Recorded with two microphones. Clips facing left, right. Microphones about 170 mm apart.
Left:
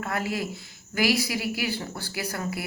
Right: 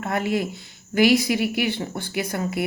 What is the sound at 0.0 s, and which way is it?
A man's voice, 25° right (ahead or behind).